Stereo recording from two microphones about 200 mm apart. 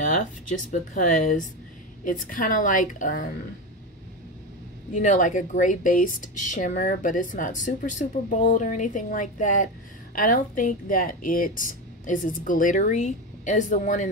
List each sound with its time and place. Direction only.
0.7 s speech: 40° left (ahead or behind)
4.9 s speech: 40° left (ahead or behind)